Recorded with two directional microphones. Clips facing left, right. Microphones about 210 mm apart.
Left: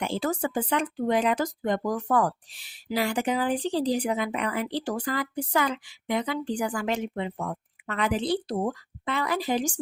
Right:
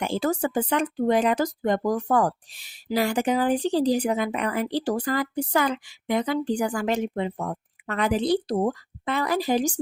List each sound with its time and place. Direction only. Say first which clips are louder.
0.0 s speech: right 3 dB; 45° right (ahead or behind)